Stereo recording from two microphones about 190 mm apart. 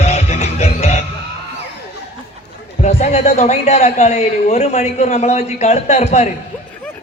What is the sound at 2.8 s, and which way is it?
A man's voice, 35° left (ahead or behind).